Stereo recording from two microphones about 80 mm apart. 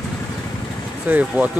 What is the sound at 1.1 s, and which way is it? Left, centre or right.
Speech, right.